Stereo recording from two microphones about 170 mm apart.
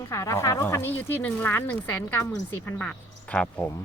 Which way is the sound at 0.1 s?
15° left (ahead or behind).